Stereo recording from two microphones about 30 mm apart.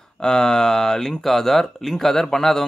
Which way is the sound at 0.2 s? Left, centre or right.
Left.